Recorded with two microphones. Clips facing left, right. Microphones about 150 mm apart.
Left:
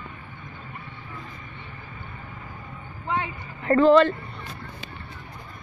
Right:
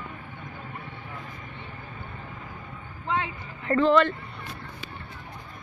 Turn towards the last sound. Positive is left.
turn(degrees=40)  # may be behind; listen again after turning